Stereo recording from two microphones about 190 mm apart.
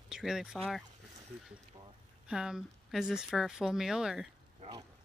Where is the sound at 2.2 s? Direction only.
5° right (ahead or behind).